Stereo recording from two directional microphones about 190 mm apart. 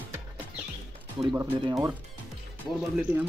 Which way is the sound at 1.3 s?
15° right (ahead or behind).